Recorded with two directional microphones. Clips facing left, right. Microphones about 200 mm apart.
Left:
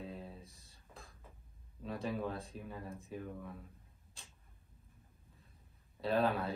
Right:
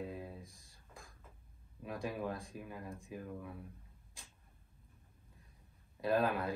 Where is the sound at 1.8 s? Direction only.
15° right (ahead or behind).